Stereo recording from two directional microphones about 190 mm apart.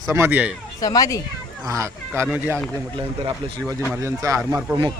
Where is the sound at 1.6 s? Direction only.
15° right (ahead or behind).